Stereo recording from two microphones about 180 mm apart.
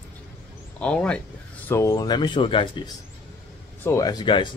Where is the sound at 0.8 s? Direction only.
5° left (ahead or behind).